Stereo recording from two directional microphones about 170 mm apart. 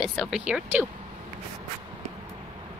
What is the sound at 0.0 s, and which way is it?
Speech, centre (ahead or behind).